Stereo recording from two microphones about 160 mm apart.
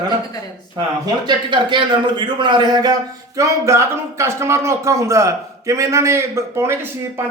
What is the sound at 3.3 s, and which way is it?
Speech, 20° right (ahead or behind).